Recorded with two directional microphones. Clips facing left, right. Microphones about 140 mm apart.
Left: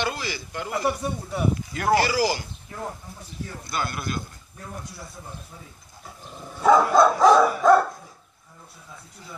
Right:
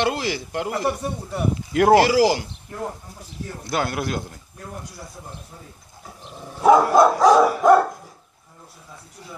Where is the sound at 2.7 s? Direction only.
10° right (ahead or behind).